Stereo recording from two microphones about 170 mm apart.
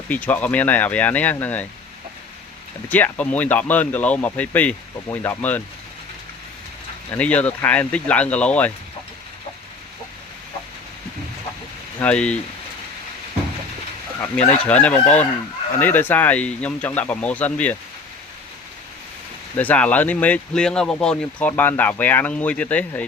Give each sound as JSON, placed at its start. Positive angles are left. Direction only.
{"t": 0.1, "sound": "speech", "side_deg": 10}
{"t": 2.9, "sound": "speech", "side_deg": 10}
{"t": 7.1, "sound": "speech", "side_deg": 10}
{"t": 11.9, "sound": "speech", "side_deg": 5}
{"t": 14.2, "sound": "speech", "side_deg": 10}
{"t": 14.9, "sound": "chicken", "side_deg": 40}
{"t": 15.8, "sound": "speech", "side_deg": 10}
{"t": 19.5, "sound": "speech", "side_deg": 10}